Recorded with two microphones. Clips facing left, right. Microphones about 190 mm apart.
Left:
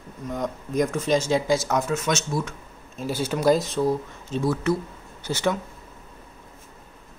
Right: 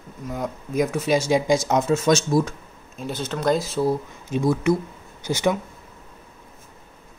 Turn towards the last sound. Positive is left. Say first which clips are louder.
# right 3 dB
turn(degrees=-10)  # may be behind; listen again after turning